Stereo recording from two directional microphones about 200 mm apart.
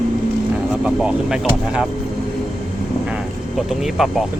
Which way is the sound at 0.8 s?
5° right (ahead or behind).